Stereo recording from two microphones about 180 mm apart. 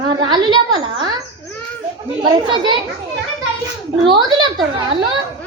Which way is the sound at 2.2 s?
25° right (ahead or behind).